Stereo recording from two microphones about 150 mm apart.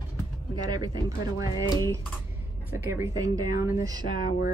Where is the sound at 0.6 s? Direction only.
25° right (ahead or behind).